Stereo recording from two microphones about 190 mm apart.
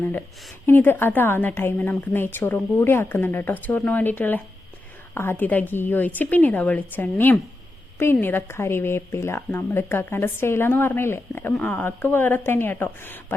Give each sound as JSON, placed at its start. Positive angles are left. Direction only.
{"t": 0.0, "sound": "speech", "side_deg": 10}